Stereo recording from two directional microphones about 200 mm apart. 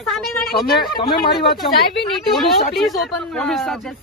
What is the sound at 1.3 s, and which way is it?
Speech, centre (ahead or behind).